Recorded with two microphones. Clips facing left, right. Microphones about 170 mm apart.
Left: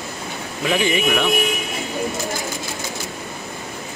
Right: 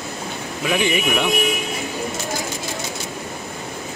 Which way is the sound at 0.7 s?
20° right (ahead or behind).